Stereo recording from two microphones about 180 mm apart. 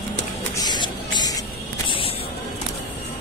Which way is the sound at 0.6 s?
25° left (ahead or behind).